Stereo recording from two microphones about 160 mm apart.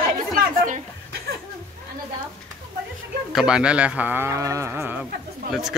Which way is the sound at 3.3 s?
5° right (ahead or behind).